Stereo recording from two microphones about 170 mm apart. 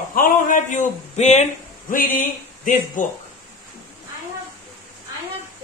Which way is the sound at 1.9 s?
55° left (ahead or behind).